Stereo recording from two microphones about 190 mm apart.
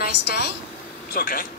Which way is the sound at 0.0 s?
55° left (ahead or behind).